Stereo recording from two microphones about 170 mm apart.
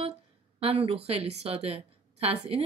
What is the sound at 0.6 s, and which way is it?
Speech, 35° right (ahead or behind).